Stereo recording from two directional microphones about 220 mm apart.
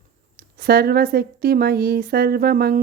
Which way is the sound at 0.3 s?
45° right (ahead or behind).